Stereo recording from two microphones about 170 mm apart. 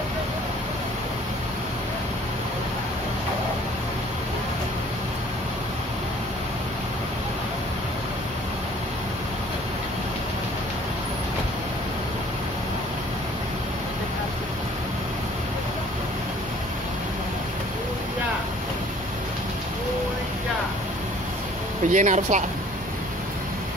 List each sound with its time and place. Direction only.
21.8 s speech: 45° right (ahead or behind)